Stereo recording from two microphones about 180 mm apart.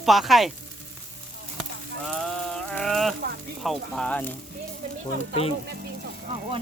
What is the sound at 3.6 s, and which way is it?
Speech, centre (ahead or behind).